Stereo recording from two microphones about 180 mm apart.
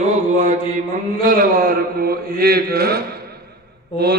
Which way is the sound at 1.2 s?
50° right (ahead or behind).